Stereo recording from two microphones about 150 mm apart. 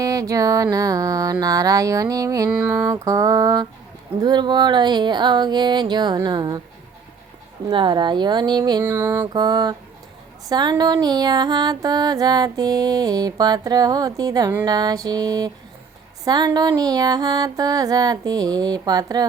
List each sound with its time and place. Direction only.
0.0 s female singing: 20° right (ahead or behind)
2.5 s female singing: 10° right (ahead or behind); by 6.6 s 30° right (ahead or behind)
7.7 s female singing: 35° right (ahead or behind)
8.8 s mantra: 15° right (ahead or behind)
9.2 s female singing: 30° right (ahead or behind)